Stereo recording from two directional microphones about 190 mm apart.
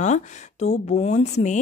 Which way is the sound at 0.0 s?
40° left (ahead or behind).